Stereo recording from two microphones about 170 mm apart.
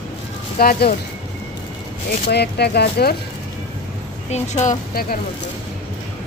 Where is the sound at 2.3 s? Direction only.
75° left (ahead or behind).